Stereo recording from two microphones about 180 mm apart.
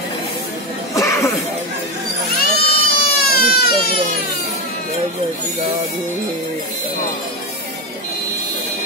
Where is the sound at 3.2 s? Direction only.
60° left (ahead or behind).